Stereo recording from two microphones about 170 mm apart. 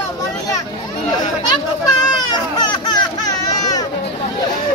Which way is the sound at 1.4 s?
25° left (ahead or behind).